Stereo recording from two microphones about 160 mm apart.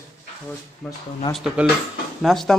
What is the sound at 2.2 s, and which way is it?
Speech, centre (ahead or behind).